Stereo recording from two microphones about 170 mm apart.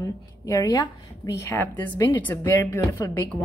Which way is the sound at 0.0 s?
20° left (ahead or behind).